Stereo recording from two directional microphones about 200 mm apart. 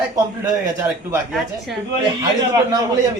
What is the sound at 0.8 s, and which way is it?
Speech, 5° right (ahead or behind).